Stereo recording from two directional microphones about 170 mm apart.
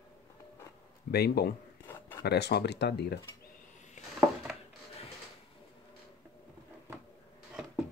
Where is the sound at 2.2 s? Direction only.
75° left (ahead or behind).